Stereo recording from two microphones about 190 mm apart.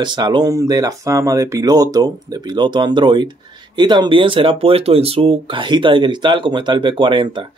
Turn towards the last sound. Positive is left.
turn(degrees=-25)  # may be behind; listen again after turning